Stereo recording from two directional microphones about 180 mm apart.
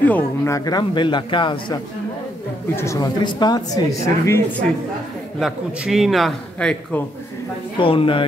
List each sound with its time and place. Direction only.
0.0 s speech: 10° left (ahead or behind)
2.7 s speech: 15° left (ahead or behind)
5.4 s a man's voice: centre (ahead or behind)
7.8 s speech: 30° left (ahead or behind)